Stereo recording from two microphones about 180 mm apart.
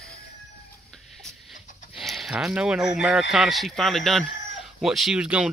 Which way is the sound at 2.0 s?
Centre (ahead or behind).